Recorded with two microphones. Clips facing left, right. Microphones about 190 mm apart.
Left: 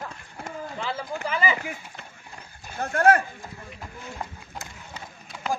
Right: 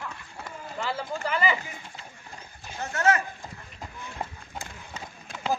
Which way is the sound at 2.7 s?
55° left (ahead or behind).